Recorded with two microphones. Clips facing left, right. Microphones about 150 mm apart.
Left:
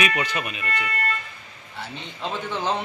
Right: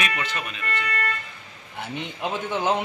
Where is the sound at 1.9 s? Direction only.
15° right (ahead or behind).